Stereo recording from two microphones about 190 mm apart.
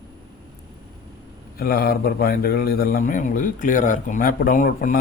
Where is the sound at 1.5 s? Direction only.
55° left (ahead or behind).